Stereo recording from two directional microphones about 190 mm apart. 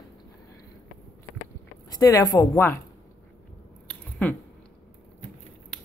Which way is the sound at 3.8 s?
5° left (ahead or behind).